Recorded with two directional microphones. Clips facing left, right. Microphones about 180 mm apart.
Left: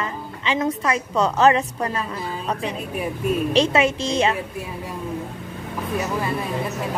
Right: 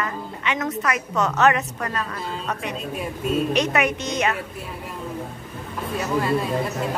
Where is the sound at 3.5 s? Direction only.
30° left (ahead or behind).